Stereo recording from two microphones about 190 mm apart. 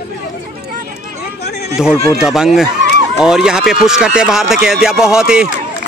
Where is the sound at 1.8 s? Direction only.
5° right (ahead or behind).